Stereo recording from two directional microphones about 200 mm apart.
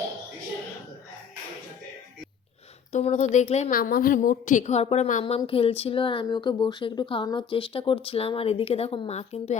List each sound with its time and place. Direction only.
2.9 s a woman's voice: 35° left (ahead or behind)
3.8 s a woman's voice: 45° left (ahead or behind)
5.2 s speech: 25° left (ahead or behind)